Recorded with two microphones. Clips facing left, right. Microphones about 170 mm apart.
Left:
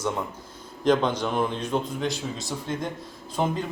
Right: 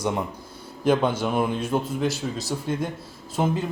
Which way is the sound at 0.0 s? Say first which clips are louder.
Right 2 dB; 15° right (ahead or behind).